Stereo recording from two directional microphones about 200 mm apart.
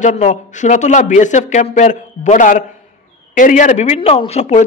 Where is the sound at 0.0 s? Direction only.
35° left (ahead or behind).